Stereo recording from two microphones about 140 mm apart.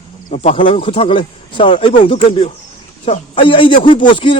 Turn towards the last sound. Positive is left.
turn(degrees=35)  # may be behind; listen again after turning